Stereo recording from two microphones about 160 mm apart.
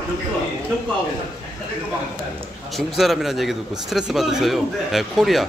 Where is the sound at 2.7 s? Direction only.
Centre (ahead or behind).